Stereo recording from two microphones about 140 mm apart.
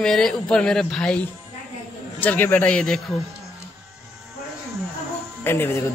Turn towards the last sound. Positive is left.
turn(degrees=15)  # may be behind; listen again after turning